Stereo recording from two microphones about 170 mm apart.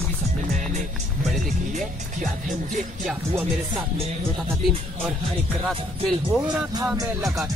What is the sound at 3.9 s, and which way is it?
Speech, 35° right (ahead or behind).